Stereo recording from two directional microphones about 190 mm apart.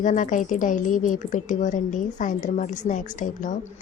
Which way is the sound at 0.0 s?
40° left (ahead or behind).